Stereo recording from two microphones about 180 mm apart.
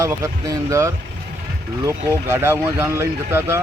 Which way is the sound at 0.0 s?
15° right (ahead or behind).